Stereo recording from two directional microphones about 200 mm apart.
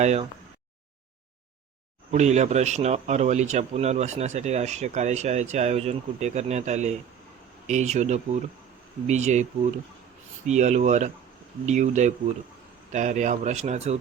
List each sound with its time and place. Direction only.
0.0 s speech: 35° right (ahead or behind)
2.0 s speech: 35° right (ahead or behind)